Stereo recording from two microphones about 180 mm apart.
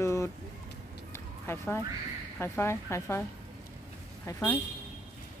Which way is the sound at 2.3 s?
10° left (ahead or behind).